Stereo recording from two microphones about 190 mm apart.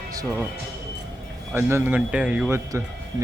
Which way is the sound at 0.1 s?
15° right (ahead or behind).